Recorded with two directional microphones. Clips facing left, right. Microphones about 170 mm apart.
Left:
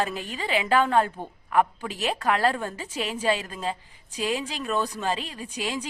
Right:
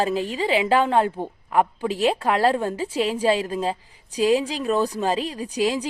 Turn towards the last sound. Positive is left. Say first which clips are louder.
# right 8 dB
turn(degrees=-35)  # may be behind; listen again after turning